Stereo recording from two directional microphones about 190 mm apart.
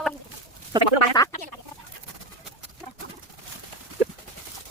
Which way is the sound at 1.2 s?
20° left (ahead or behind).